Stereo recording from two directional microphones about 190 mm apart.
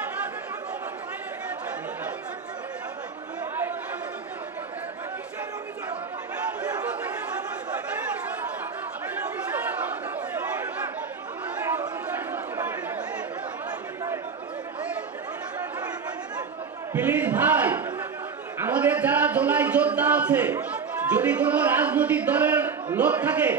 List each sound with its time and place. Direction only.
12.3 s chatter: 10° right (ahead or behind)
16.9 s crowd: 10° right (ahead or behind)
18.6 s a man's voice: 10° right (ahead or behind)